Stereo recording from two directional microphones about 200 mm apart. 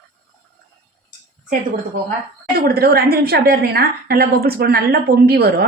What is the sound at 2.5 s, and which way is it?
A woman's voice, 50° right (ahead or behind).